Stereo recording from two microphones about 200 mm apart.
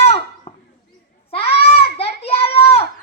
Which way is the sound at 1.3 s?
30° left (ahead or behind).